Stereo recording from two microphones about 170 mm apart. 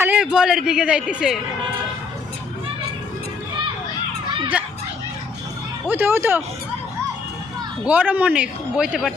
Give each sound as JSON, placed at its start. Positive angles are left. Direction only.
{"t": 0.0, "sound": "speech", "side_deg": -10}
{"t": 4.3, "sound": "a sound", "side_deg": -30}
{"t": 5.9, "sound": "a man's voice", "side_deg": -10}
{"t": 7.9, "sound": "a man's voice", "side_deg": -10}